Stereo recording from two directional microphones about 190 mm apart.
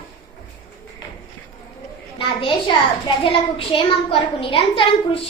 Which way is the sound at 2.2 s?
25° left (ahead or behind).